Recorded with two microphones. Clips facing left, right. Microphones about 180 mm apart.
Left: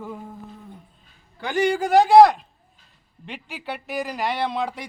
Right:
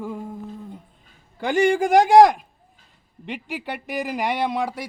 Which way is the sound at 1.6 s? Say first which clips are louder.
Right 2 dB; 50° right (ahead or behind).